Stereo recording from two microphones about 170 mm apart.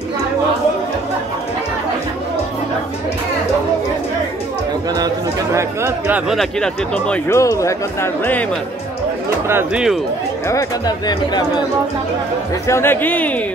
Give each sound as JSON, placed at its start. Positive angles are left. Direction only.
{"t": 4.9, "sound": "speech", "side_deg": -20}
{"t": 7.2, "sound": "speech", "side_deg": 15}
{"t": 9.5, "sound": "speech", "side_deg": -15}
{"t": 10.5, "sound": "speech", "side_deg": 25}
{"t": 12.6, "sound": "speech", "side_deg": 15}